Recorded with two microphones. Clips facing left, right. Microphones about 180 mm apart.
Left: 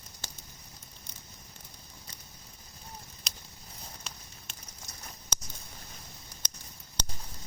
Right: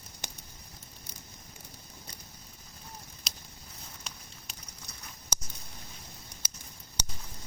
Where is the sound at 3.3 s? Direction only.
Centre (ahead or behind).